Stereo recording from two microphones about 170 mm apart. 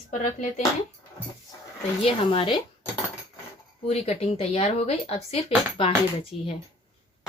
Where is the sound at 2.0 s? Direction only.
30° left (ahead or behind).